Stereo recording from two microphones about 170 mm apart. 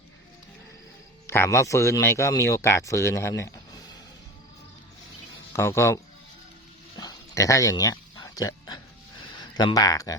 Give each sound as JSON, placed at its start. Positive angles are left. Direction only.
{"t": 1.3, "sound": "speech", "side_deg": 15}
{"t": 5.5, "sound": "speech", "side_deg": 15}
{"t": 6.9, "sound": "dog", "side_deg": 20}
{"t": 9.4, "sound": "speech", "side_deg": 25}